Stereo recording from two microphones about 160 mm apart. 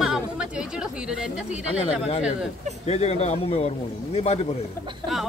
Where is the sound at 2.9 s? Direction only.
40° left (ahead or behind).